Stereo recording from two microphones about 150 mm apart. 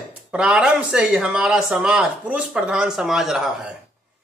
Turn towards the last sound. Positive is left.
turn(degrees=-5)  # may be behind; listen again after turning